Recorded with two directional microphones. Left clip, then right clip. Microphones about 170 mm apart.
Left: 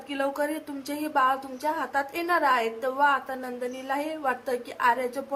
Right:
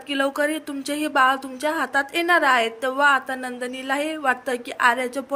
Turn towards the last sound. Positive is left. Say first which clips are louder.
# right 4 dB
turn(degrees=-20)  # may be behind; listen again after turning